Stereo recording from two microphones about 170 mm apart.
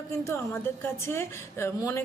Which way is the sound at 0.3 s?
15° left (ahead or behind).